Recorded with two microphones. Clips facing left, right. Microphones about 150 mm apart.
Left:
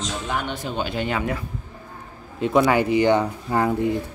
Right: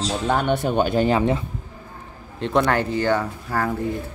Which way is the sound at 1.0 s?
30° right (ahead or behind).